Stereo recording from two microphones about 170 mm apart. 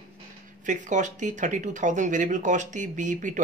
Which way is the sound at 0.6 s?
45° right (ahead or behind).